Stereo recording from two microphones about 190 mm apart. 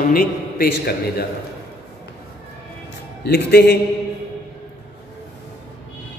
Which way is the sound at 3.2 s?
55° left (ahead or behind).